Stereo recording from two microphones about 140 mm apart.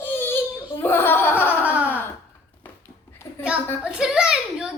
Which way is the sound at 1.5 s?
10° right (ahead or behind).